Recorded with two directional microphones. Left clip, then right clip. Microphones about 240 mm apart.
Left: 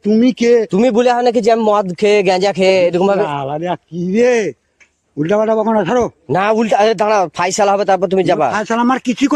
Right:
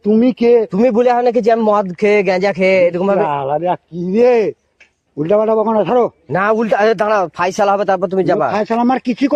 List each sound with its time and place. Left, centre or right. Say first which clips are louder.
0.0 s speech: right 1 dB; left